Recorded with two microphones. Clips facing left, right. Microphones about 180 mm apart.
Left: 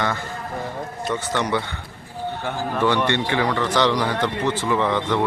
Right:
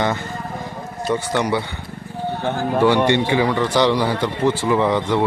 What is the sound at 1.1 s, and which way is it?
Speech, 10° right (ahead or behind).